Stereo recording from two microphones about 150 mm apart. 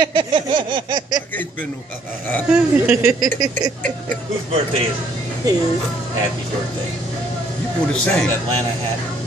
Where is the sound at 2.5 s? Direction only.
5° right (ahead or behind).